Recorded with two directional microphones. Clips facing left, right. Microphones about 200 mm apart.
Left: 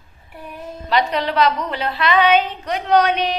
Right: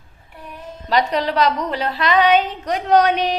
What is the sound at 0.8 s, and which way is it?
A woman's voice, 40° right (ahead or behind).